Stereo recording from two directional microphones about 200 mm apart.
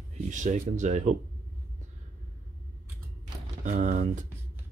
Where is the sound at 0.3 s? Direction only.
35° right (ahead or behind).